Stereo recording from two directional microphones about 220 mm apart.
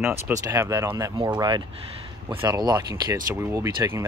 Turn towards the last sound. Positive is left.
turn(degrees=-15)  # may be behind; listen again after turning